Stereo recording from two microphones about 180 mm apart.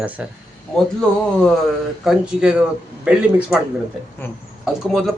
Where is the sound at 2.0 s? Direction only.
5° right (ahead or behind).